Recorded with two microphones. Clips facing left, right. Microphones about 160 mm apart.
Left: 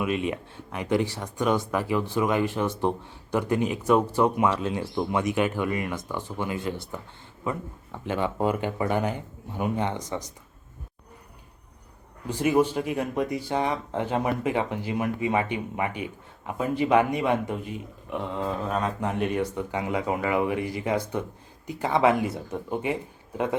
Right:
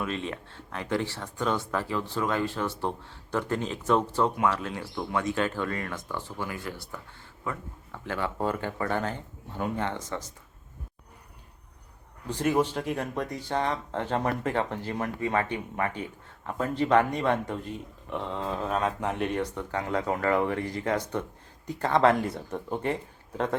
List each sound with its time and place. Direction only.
0.0 s speech: 15° left (ahead or behind)
12.3 s speech: 5° left (ahead or behind)